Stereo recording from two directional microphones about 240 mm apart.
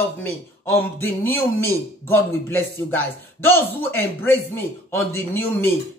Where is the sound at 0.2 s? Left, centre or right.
Centre.